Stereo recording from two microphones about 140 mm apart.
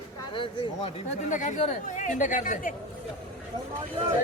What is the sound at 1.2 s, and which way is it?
Speech, 60° left (ahead or behind).